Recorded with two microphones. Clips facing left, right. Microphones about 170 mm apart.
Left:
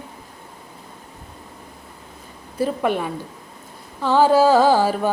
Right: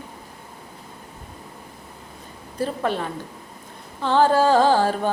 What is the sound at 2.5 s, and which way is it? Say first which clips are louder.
Female singing: left 3 dB; 15° left (ahead or behind).